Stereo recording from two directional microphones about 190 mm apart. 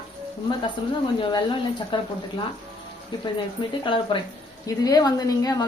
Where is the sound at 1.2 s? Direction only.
25° left (ahead or behind).